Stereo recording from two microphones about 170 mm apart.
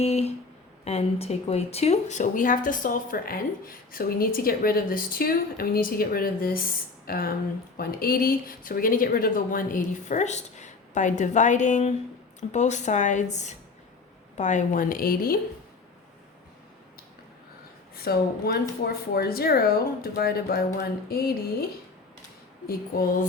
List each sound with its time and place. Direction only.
0.0 s a woman's voice: 40° left (ahead or behind); by 15.4 s 60° left (ahead or behind)
17.9 s a woman's voice: 65° left (ahead or behind)